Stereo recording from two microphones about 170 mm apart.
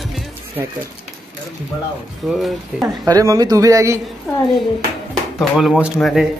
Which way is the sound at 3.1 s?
20° right (ahead or behind).